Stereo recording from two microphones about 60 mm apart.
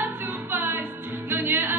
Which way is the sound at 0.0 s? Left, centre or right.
Right.